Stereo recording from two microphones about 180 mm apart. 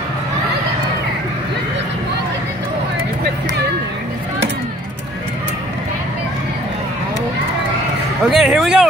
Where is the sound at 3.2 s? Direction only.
65° right (ahead or behind).